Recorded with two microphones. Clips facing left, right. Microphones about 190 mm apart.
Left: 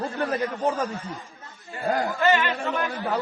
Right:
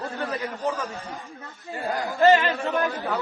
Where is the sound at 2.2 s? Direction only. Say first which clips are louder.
Right 6 dB; 35° right (ahead or behind).